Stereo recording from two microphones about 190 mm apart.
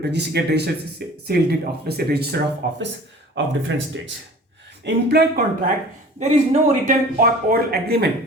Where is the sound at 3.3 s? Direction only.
80° right.